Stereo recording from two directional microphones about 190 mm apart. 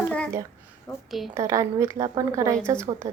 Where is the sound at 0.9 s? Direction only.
20° left (ahead or behind).